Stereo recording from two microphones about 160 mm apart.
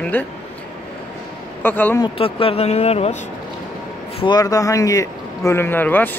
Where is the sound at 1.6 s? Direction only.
10° left (ahead or behind).